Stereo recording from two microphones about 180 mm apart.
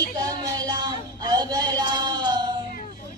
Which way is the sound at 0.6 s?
25° right (ahead or behind).